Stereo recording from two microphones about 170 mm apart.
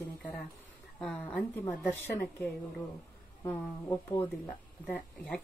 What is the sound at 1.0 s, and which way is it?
Speech, 5° left (ahead or behind).